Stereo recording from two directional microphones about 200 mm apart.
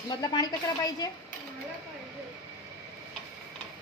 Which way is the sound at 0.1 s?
20° left (ahead or behind).